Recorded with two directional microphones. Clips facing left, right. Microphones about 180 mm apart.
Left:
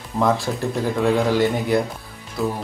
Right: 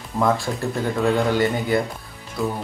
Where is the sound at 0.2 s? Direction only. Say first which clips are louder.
Left 1 dB; centre (ahead or behind).